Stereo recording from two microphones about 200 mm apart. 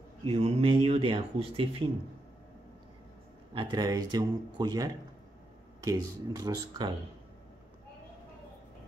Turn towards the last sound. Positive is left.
turn(degrees=-20)  # may be behind; listen again after turning